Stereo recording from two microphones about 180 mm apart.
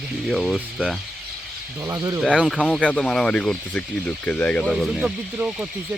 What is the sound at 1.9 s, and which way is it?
Speech, 20° right (ahead or behind).